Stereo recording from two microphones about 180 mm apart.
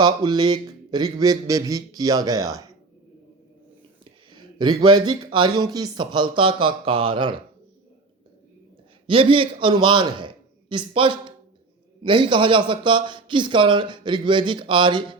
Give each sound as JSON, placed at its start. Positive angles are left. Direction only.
{"t": 0.0, "sound": "speech", "side_deg": -25}
{"t": 4.0, "sound": "speech", "side_deg": -25}
{"t": 9.0, "sound": "a man's voice", "side_deg": -30}